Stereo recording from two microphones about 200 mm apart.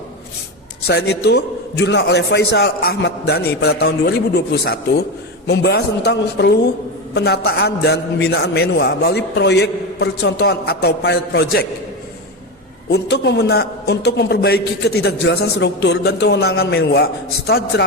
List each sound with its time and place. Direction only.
0.9 s a man's voice: 55° left (ahead or behind)
12.9 s a man's voice: 55° left (ahead or behind)